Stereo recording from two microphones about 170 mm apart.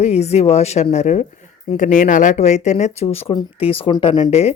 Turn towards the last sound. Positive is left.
turn(degrees=40)  # may be behind; listen again after turning